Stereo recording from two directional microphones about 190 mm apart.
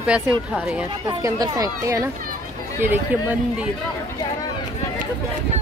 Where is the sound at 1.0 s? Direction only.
20° right (ahead or behind).